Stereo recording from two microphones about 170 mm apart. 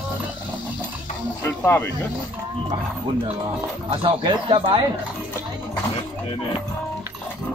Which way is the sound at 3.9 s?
30° right (ahead or behind).